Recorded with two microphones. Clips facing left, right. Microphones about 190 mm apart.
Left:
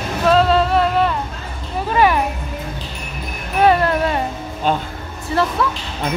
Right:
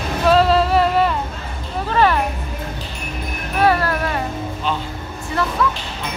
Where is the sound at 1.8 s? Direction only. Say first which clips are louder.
Left 1 dB; 10° left (ahead or behind).